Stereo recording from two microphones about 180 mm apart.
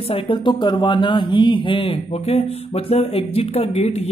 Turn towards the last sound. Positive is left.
turn(degrees=35)  # may be behind; listen again after turning